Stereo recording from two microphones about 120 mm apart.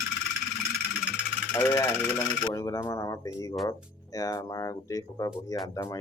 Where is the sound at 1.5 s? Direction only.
25° left (ahead or behind).